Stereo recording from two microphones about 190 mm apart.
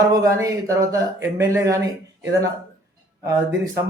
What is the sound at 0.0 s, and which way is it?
A man's voice, 15° right (ahead or behind).